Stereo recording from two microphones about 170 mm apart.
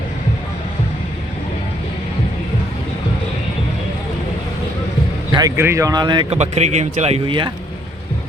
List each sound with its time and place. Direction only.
5.3 s speech: 20° right (ahead or behind)
6.3 s speech: 40° right (ahead or behind)